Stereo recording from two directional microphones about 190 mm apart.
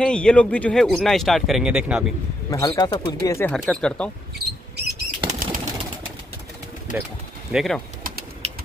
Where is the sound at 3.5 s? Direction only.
Centre (ahead or behind).